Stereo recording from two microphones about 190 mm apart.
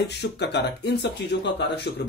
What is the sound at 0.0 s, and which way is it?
Speech, 65° left (ahead or behind).